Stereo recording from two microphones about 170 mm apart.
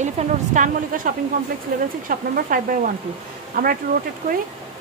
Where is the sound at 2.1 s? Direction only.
55° right (ahead or behind).